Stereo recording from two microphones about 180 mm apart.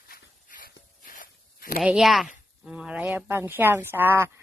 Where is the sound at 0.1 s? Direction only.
50° left (ahead or behind).